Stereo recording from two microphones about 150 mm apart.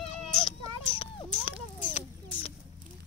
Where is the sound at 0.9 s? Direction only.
35° left (ahead or behind).